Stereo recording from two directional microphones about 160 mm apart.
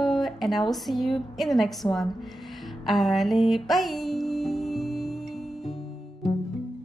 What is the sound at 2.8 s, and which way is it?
Music, centre (ahead or behind).